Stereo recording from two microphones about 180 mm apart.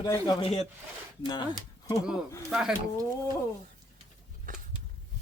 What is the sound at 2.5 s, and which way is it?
Speech, 5° right (ahead or behind).